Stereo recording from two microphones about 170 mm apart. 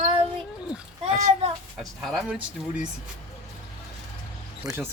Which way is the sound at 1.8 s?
Centre (ahead or behind).